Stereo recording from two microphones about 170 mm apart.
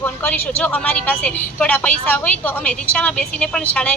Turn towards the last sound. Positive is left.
turn(degrees=5)  # may be behind; listen again after turning